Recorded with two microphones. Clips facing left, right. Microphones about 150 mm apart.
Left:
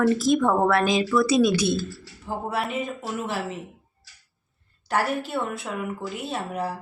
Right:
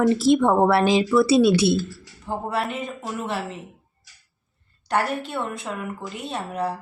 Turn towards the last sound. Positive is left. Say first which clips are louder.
# right 2 dB
turn(degrees=0)  # may be behind; listen again after turning